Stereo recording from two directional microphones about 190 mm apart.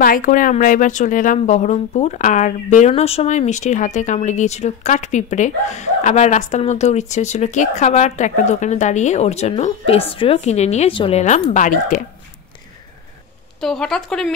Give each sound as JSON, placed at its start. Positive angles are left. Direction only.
{"t": 0.0, "sound": "speech", "side_deg": 45}
{"t": 13.6, "sound": "speech", "side_deg": 5}